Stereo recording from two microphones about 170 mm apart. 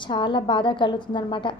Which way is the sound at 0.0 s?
30° left (ahead or behind).